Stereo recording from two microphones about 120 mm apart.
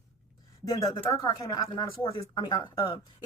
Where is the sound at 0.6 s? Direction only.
25° left (ahead or behind).